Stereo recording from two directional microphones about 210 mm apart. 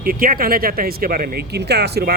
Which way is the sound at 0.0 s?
45° right (ahead or behind).